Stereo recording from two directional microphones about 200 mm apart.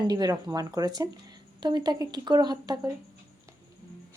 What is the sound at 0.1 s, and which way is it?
Speech, 20° right (ahead or behind).